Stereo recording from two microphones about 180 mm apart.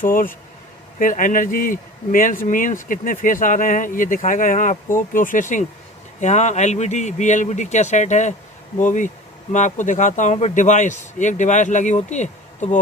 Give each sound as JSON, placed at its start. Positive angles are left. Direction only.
{"t": 0.0, "sound": "a man's voice", "side_deg": 50}